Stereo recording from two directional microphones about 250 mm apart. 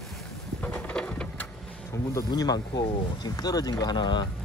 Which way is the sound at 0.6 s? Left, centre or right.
Centre.